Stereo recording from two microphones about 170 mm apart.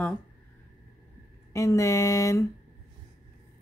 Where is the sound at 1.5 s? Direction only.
15° left (ahead or behind).